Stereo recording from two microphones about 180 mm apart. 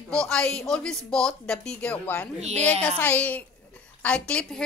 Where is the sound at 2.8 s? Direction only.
10° left (ahead or behind).